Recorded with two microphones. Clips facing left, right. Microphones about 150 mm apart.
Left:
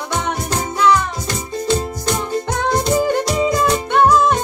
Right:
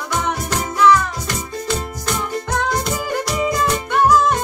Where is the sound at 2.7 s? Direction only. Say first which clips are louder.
Left 6 dB; 25° left (ahead or behind).